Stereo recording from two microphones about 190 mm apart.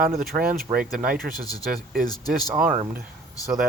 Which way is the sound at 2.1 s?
20° left (ahead or behind).